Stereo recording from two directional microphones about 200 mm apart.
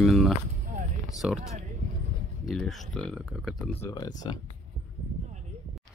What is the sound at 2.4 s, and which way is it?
Speech, centre (ahead or behind).